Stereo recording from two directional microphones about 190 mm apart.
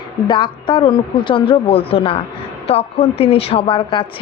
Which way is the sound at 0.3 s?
25° left (ahead or behind).